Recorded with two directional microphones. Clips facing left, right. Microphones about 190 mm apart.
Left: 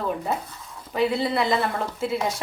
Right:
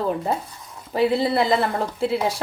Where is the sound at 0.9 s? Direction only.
35° right (ahead or behind).